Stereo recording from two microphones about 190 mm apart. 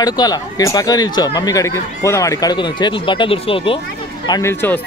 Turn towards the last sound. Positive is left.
turn(degrees=10)  # may be behind; listen again after turning